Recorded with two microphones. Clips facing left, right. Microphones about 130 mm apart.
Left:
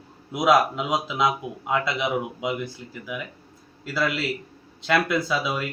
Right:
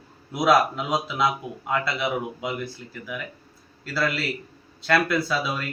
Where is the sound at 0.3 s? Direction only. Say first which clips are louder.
Even; 15° left (ahead or behind).